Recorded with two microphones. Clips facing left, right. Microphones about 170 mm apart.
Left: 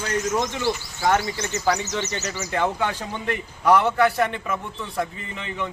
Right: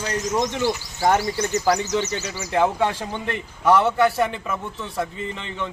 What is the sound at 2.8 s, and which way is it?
Speech, 30° right (ahead or behind).